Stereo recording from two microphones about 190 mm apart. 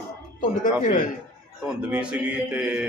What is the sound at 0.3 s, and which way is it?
Speech, 45° left (ahead or behind).